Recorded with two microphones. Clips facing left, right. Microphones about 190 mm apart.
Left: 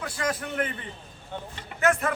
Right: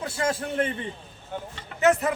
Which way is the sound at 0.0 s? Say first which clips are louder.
Right 3 dB; 25° right (ahead or behind).